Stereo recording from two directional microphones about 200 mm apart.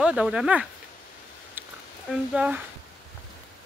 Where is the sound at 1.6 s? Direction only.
10° right (ahead or behind).